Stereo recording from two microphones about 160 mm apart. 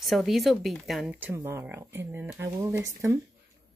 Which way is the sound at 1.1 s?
15° right (ahead or behind).